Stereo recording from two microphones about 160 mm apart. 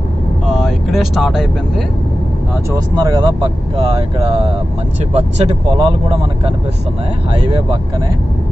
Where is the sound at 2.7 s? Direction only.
25° right (ahead or behind).